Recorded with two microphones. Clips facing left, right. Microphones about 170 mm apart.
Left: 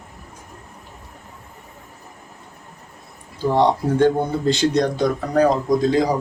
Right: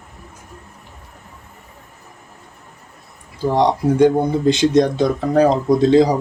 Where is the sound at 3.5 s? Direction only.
15° right (ahead or behind).